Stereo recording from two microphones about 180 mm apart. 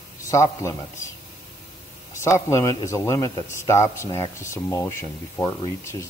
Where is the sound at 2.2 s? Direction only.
15° left (ahead or behind).